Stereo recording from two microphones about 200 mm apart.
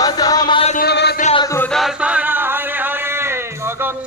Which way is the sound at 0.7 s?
55° left (ahead or behind).